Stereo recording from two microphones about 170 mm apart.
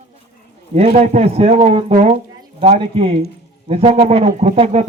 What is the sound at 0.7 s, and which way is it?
Speech, 40° right (ahead or behind).